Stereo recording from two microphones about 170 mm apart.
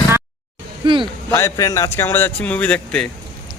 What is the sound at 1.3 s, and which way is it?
Speech, 15° left (ahead or behind).